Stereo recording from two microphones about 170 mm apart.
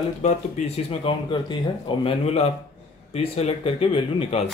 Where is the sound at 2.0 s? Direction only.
35° left (ahead or behind).